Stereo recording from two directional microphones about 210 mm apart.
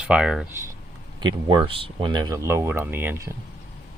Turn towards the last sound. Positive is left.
turn(degrees=-10)  # may be behind; listen again after turning